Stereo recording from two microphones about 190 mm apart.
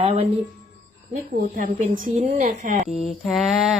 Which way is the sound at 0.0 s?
30° right (ahead or behind).